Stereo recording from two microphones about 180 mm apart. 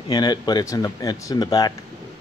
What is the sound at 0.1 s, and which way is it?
Speech, 25° left (ahead or behind).